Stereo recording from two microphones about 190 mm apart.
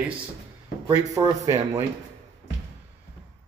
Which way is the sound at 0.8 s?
15° right (ahead or behind).